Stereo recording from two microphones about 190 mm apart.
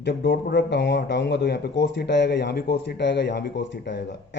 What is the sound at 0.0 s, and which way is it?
A man's voice, 70° left (ahead or behind).